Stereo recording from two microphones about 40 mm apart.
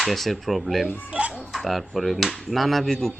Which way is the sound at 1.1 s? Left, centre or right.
Right.